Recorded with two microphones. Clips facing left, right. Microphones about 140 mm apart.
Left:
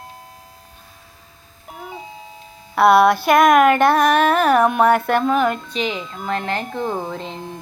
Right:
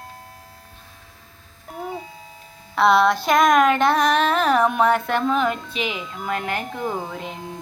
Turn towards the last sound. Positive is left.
turn(degrees=-5)  # may be behind; listen again after turning